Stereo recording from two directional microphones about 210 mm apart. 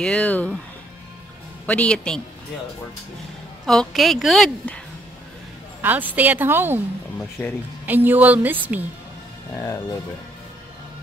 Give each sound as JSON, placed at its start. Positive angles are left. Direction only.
{"t": 0.0, "sound": "a woman's voice", "side_deg": 5}
{"t": 1.7, "sound": "a woman's voice", "side_deg": 5}
{"t": 3.6, "sound": "a woman's voice", "side_deg": 0}
{"t": 5.8, "sound": "a woman's voice", "side_deg": -10}
{"t": 7.8, "sound": "a woman's voice", "side_deg": -10}
{"t": 9.6, "sound": "speech", "side_deg": 15}